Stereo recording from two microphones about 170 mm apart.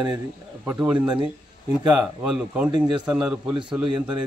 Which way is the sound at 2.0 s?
Centre (ahead or behind).